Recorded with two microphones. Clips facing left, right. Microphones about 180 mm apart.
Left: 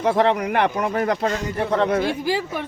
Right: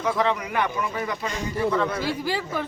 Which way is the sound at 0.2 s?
65° left (ahead or behind).